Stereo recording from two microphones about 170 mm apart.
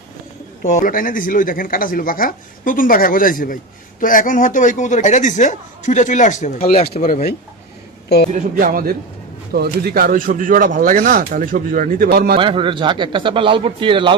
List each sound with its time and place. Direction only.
0.6 s speech: 50° left (ahead or behind)
7.0 s speech: 55° left (ahead or behind)
8.3 s speech: 55° right (ahead or behind)
12.4 s speech: 30° right (ahead or behind)